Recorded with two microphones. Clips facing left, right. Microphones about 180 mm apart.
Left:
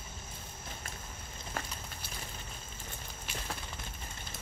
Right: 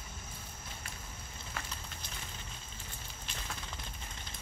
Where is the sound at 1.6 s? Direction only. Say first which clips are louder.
Left 4 dB; 45° left (ahead or behind).